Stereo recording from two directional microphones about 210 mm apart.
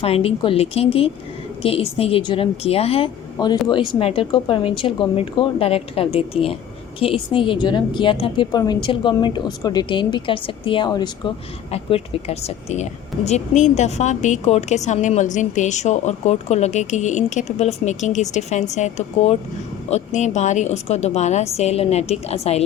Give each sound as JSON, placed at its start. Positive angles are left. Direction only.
{"t": 0.0, "sound": "a woman's voice", "side_deg": 30}